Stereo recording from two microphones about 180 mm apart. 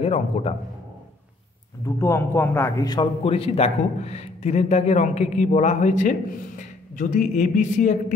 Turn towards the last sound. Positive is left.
turn(degrees=45)  # may be behind; listen again after turning